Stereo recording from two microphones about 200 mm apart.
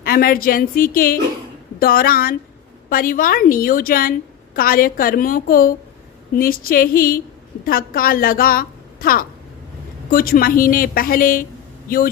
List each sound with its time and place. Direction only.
0.0 s a woman's voice: 45° left (ahead or behind)